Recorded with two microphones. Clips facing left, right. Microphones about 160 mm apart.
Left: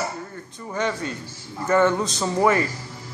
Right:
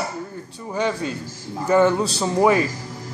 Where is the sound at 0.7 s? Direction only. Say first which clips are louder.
Right 3 dB; 15° right (ahead or behind).